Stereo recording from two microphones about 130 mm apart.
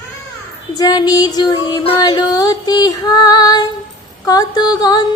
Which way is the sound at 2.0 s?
30° left (ahead or behind).